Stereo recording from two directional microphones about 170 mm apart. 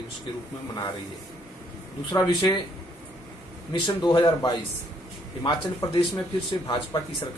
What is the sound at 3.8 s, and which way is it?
Speech, 25° left (ahead or behind).